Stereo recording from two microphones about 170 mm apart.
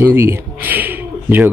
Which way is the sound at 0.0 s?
15° right (ahead or behind).